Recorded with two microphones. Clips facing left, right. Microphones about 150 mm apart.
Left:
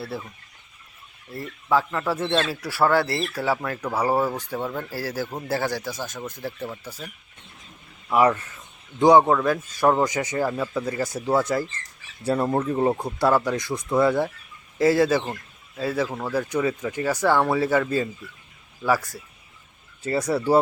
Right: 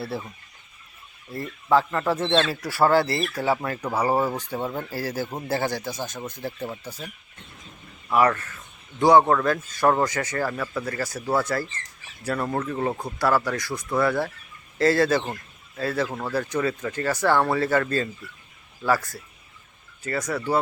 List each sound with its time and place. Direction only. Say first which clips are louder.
1.3 s speech: right 2 dB; 5° left (ahead or behind)
3.4 s speech: right 1 dB; 15° right (ahead or behind)
4.9 s speech: even; 5° left (ahead or behind)
5.8 s speech: even; 25° right (ahead or behind)
6.8 s speech: right 1 dB; centre (ahead or behind)
8.1 s a man's voice: left 1 dB; 15° left (ahead or behind)
20.1 s speech: left 5 dB; 30° left (ahead or behind)